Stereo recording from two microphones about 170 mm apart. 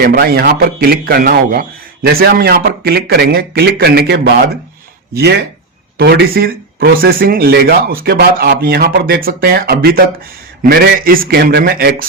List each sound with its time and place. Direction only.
0.0 s a man's voice: 65° right (ahead or behind)
6.0 s speech: 65° right (ahead or behind)